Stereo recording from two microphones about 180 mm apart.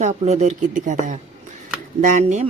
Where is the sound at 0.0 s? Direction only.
40° right (ahead or behind).